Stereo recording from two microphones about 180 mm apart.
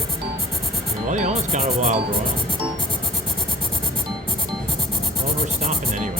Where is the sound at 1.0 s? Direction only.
40° right (ahead or behind).